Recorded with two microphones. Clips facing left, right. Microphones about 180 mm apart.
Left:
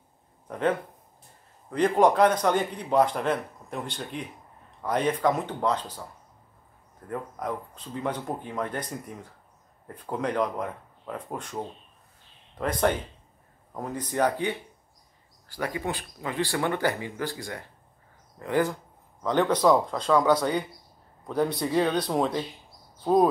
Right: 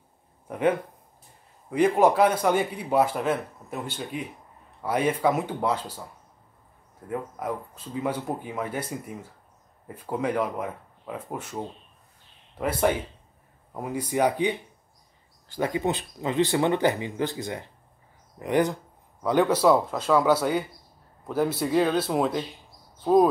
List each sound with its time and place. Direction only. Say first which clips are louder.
0.5 s a man's voice: right 2 dB; 10° right (ahead or behind)
7.1 s a man's voice: right 2 dB; 5° right (ahead or behind)